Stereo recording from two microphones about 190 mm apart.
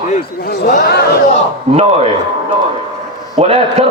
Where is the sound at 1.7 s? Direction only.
30° right (ahead or behind).